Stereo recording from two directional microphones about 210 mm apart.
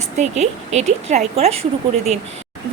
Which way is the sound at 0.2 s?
35° right (ahead or behind).